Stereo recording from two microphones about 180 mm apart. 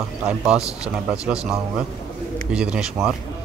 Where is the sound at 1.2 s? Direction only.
5° right (ahead or behind).